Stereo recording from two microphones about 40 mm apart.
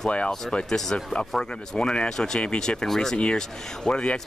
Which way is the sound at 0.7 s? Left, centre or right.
Centre.